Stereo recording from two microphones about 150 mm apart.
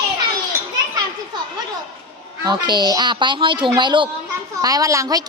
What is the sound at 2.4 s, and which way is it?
A woman's voice, 30° right (ahead or behind).